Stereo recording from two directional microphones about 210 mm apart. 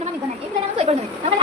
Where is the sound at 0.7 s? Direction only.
30° right (ahead or behind).